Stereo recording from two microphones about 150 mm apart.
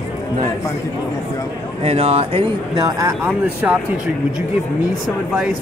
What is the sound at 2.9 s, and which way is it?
Speech, 20° right (ahead or behind).